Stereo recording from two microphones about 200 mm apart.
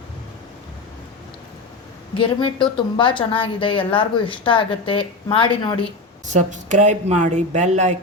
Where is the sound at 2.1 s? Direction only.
25° left (ahead or behind).